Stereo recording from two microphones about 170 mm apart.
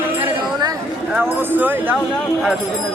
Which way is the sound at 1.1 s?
10° right (ahead or behind).